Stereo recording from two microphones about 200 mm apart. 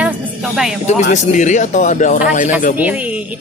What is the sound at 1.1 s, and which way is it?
Speech, 40° left (ahead or behind).